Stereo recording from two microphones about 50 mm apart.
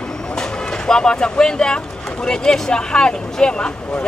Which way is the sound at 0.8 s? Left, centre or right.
Centre.